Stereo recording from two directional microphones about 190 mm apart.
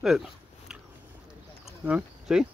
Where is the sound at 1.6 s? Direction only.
5° right (ahead or behind).